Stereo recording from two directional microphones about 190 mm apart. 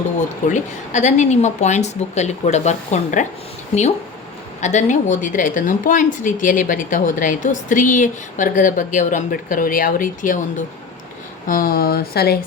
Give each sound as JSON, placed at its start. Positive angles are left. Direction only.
{"t": 0.4, "sound": "a woman's voice", "side_deg": 40}
{"t": 11.4, "sound": "a woman's voice", "side_deg": 50}